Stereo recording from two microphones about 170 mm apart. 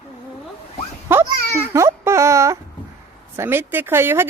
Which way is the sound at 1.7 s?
15° right (ahead or behind).